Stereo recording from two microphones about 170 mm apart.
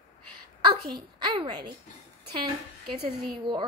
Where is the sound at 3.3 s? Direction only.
30° right (ahead or behind).